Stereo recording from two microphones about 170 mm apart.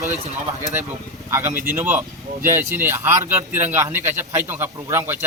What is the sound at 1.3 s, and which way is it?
A man's voice, 15° right (ahead or behind).